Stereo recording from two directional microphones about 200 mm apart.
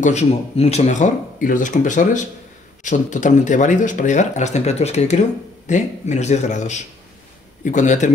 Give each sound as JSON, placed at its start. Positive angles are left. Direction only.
{"t": 0.0, "sound": "speech", "side_deg": 35}